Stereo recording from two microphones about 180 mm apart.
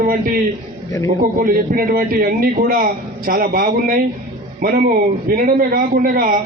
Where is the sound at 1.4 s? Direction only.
55° right (ahead or behind).